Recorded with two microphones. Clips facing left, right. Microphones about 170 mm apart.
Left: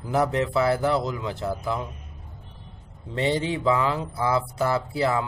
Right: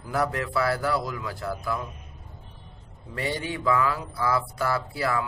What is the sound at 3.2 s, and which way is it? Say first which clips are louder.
Speech: left 6 dB; 25° left (ahead or behind).